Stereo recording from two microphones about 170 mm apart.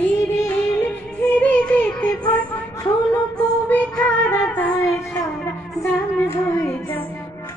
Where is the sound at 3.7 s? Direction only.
10° left (ahead or behind).